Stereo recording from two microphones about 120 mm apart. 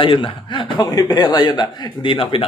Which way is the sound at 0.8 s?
30° left (ahead or behind).